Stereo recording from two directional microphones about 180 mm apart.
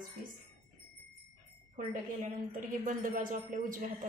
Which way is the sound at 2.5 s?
50° right (ahead or behind).